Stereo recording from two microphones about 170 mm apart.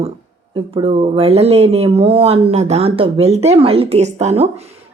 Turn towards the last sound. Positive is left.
turn(degrees=-40)  # may be behind; listen again after turning